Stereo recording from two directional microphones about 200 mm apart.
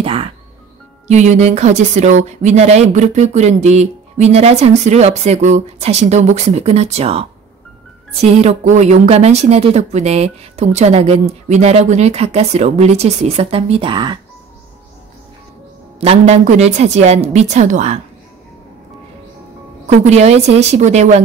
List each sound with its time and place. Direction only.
0.0 s music: 25° right (ahead or behind)
1.0 s speech: 35° right (ahead or behind)
16.0 s speech: 30° right (ahead or behind)
19.9 s speech: 35° right (ahead or behind)